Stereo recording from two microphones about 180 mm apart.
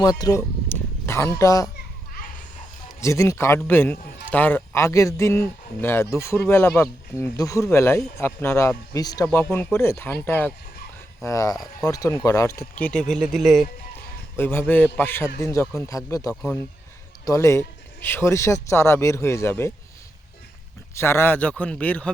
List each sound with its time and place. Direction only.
0.0 s speech: 20° left (ahead or behind)
3.0 s speech: 15° left (ahead or behind); by 13.7 s centre (ahead or behind)
14.3 s speech: 10° left (ahead or behind)
16.3 s speech: 5° left (ahead or behind)
17.2 s speech: 15° left (ahead or behind)
20.9 s speech: 15° left (ahead or behind)